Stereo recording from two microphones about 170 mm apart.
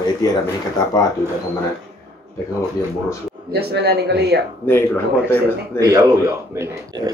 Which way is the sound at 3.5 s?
75° right (ahead or behind).